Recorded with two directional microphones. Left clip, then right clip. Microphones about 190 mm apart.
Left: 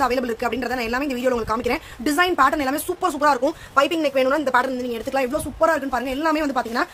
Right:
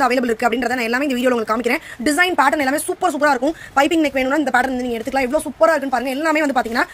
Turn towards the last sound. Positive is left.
turn(degrees=-25)  # may be behind; listen again after turning